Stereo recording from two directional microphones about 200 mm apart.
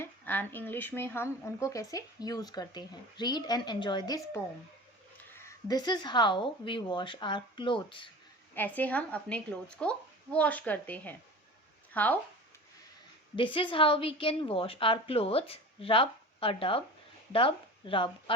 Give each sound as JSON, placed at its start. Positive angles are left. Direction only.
{"t": 0.0, "sound": "speech", "side_deg": 10}
{"t": 5.3, "sound": "a woman's voice", "side_deg": 15}
{"t": 8.5, "sound": "speech", "side_deg": 10}
{"t": 13.3, "sound": "a woman's voice", "side_deg": 25}